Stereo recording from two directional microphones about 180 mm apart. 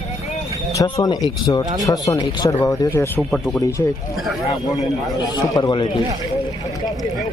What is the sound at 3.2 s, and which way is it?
Speech, centre (ahead or behind).